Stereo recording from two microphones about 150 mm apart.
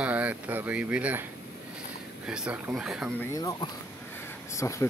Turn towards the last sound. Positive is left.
turn(degrees=20)  # may be behind; listen again after turning